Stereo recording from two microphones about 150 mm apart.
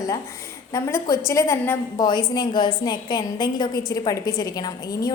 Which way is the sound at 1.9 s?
30° left (ahead or behind).